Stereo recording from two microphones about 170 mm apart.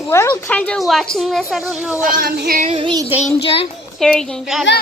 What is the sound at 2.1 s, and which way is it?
Speech, 60° right (ahead or behind).